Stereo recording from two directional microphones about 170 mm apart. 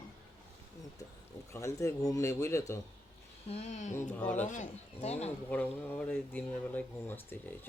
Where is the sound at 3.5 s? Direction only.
40° left (ahead or behind).